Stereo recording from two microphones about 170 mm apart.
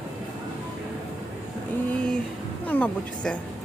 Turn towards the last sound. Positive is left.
turn(degrees=10)  # may be behind; listen again after turning